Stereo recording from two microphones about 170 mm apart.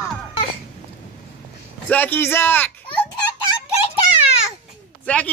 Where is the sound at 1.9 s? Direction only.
10° left (ahead or behind).